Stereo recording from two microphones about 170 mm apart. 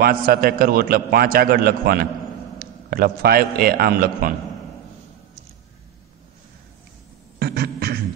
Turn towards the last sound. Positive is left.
turn(degrees=-70)  # may be behind; listen again after turning